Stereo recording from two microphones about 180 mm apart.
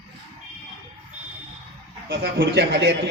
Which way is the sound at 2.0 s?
70° right (ahead or behind).